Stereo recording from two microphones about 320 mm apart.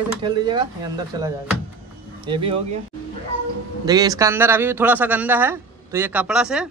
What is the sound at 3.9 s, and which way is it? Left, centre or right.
Speech, centre.